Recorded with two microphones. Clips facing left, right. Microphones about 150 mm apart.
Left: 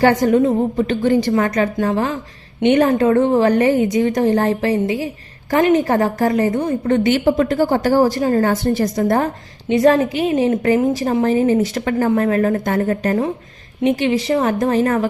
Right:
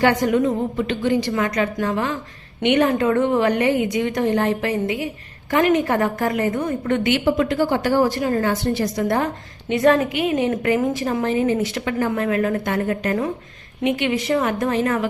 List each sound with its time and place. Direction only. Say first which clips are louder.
0.0 s a woman's voice: left 4 dB; 40° left (ahead or behind)